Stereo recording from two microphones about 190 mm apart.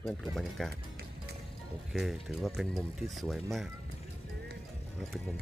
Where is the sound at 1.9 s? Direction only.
Centre (ahead or behind).